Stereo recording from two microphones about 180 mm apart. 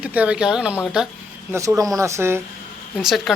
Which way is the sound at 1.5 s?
20° right (ahead or behind).